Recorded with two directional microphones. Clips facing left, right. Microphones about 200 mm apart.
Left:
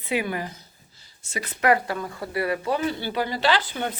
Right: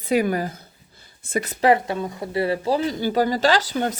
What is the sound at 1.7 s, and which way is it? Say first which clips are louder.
Speech: right 2 dB; 25° right (ahead or behind).